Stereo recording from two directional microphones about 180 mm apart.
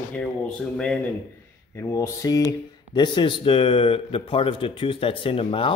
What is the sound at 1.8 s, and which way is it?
Speech, 15° left (ahead or behind).